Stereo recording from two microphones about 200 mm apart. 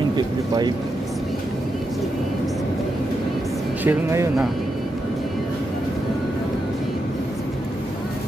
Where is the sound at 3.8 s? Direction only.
10° right (ahead or behind).